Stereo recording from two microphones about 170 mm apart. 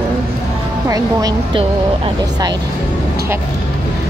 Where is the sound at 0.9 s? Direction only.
20° right (ahead or behind).